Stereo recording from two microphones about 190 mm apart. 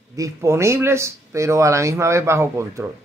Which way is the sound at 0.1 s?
15° right (ahead or behind).